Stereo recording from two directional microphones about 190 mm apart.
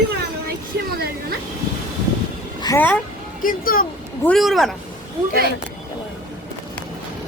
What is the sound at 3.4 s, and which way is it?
Speech, 45° left (ahead or behind).